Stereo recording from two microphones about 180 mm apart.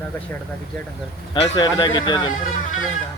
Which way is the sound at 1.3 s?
25° left (ahead or behind).